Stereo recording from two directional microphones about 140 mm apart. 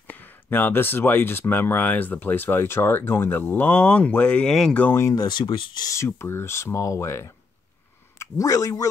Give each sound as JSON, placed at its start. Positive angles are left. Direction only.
{"t": 0.0, "sound": "speech", "side_deg": 15}